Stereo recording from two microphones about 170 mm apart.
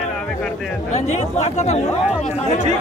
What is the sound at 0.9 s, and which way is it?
Speech, 40° left (ahead or behind).